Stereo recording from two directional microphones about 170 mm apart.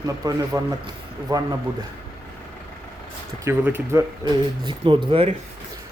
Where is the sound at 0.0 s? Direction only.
20° right (ahead or behind).